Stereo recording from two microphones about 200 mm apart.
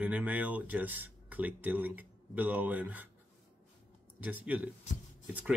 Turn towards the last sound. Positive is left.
turn(degrees=-5)  # may be behind; listen again after turning